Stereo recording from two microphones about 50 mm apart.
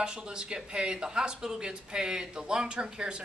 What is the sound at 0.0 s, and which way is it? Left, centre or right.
Speech, centre.